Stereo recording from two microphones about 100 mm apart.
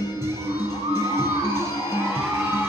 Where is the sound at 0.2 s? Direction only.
25° right (ahead or behind).